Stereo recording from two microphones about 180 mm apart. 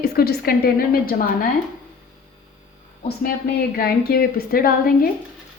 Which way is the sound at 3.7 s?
60° left (ahead or behind).